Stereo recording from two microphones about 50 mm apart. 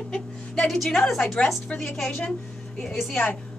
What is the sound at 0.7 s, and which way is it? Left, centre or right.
Speech, centre.